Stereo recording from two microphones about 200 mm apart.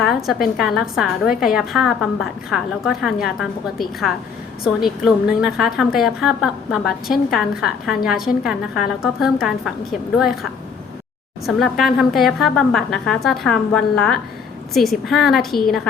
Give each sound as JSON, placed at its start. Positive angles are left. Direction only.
{"t": 0.0, "sound": "a woman's voice", "side_deg": 0}